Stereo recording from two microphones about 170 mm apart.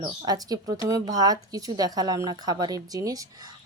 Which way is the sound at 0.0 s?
20° right (ahead or behind).